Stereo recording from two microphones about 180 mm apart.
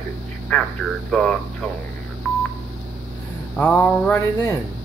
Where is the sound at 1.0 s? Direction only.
Centre (ahead or behind).